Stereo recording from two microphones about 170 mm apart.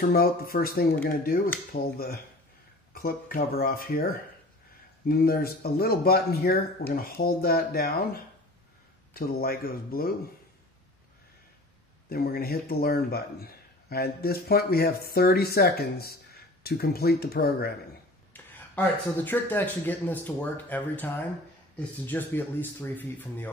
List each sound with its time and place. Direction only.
0.0 s speech: 60° left (ahead or behind)
12.1 s speech: 65° left (ahead or behind)
18.3 s speech: 10° left (ahead or behind)